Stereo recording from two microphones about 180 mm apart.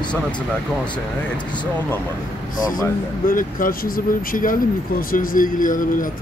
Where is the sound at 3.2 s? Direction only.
50° left (ahead or behind).